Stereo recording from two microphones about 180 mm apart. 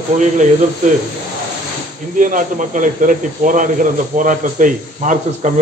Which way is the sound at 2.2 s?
45° right (ahead or behind).